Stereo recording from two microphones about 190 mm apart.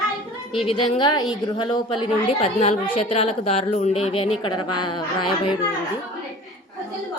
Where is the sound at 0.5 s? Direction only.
30° left (ahead or behind).